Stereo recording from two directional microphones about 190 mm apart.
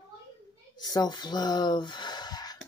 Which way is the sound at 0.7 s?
20° left (ahead or behind).